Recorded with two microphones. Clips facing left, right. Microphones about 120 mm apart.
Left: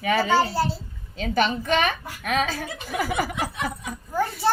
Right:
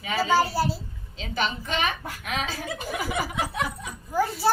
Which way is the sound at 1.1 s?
50° left (ahead or behind).